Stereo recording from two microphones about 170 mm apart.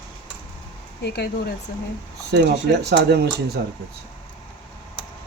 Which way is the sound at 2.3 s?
75° right (ahead or behind).